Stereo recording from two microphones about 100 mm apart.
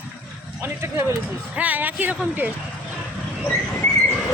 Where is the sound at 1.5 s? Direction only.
15° right (ahead or behind).